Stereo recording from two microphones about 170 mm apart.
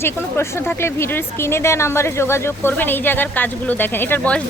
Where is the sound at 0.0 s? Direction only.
15° left (ahead or behind).